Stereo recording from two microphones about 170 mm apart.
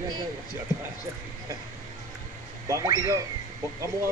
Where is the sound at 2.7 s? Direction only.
20° right (ahead or behind).